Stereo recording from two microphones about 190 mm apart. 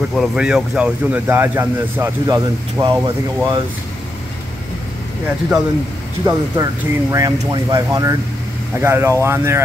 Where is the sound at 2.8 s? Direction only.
25° right (ahead or behind).